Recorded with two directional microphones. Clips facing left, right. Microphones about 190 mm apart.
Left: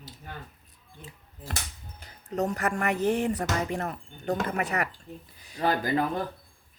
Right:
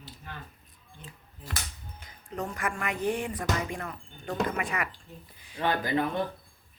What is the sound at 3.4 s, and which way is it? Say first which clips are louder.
Speech: left 3 dB; 35° left (ahead or behind).